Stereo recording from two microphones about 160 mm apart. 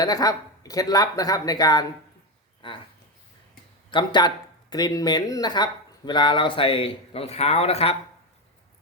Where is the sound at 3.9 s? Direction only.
30° left (ahead or behind).